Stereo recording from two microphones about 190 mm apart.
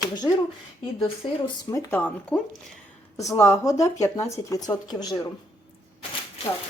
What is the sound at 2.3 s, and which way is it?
Speech, 5° left (ahead or behind).